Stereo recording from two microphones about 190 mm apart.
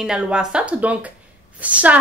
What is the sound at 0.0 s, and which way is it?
A woman's voice, 5° right (ahead or behind).